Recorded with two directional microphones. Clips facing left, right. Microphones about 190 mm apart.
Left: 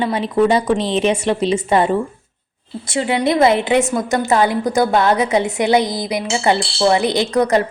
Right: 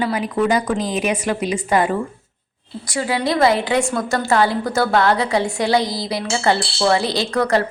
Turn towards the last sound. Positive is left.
turn(degrees=20)  # may be behind; listen again after turning